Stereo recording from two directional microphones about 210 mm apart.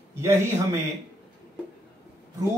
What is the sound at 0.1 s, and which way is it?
Speech, 10° right (ahead or behind).